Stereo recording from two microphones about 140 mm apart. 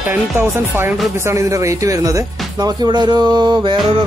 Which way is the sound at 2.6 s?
30° right (ahead or behind).